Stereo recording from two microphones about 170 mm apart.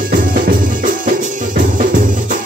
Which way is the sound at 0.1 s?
55° right (ahead or behind).